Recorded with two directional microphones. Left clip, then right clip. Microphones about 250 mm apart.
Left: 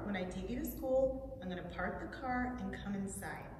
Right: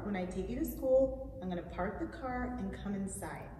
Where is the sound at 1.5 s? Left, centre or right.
Centre.